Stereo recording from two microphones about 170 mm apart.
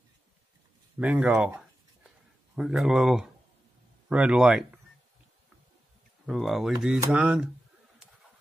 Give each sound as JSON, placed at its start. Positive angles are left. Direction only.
{"t": 0.9, "sound": "speech", "side_deg": -10}
{"t": 6.2, "sound": "speech", "side_deg": 0}